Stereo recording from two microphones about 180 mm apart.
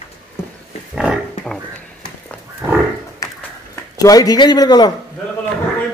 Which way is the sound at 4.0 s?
20° left (ahead or behind).